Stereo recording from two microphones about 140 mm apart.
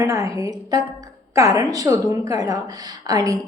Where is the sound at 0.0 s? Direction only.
20° right (ahead or behind).